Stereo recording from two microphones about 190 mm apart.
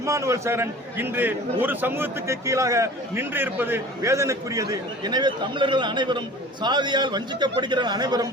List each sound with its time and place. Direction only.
0.0 s a man's voice: 15° right (ahead or behind)